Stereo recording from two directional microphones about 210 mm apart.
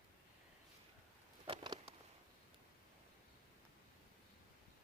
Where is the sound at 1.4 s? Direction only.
20° right (ahead or behind).